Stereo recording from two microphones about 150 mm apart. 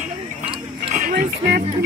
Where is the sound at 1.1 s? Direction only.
90° right.